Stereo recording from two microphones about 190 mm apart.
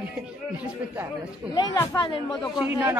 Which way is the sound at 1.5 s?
20° left (ahead or behind).